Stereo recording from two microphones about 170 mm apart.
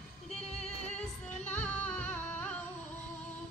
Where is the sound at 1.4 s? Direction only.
10° left (ahead or behind).